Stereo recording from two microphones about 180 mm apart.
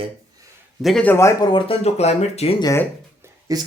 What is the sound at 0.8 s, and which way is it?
Speech, 5° left (ahead or behind).